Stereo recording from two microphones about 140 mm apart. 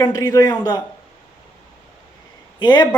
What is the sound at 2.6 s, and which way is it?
Speech, 30° left (ahead or behind).